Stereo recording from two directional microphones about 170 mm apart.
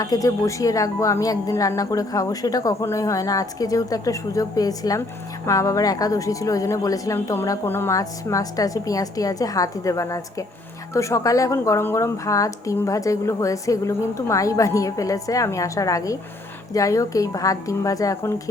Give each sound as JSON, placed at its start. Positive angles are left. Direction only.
{"t": 0.0, "sound": "speech", "side_deg": 20}